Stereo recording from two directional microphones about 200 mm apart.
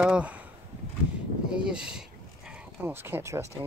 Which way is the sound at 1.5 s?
5° right (ahead or behind).